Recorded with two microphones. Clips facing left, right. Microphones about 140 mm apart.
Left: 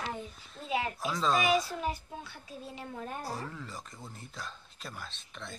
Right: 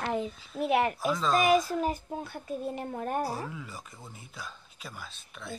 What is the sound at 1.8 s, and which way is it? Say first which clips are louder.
A child's voice: right 5 dB; 50° right (ahead or behind).